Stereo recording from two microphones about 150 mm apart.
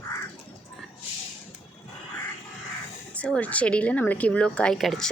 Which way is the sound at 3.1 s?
10° left (ahead or behind).